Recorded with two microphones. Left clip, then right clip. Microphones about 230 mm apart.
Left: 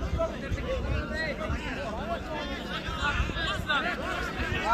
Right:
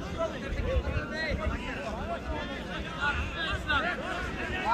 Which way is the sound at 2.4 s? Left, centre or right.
Left.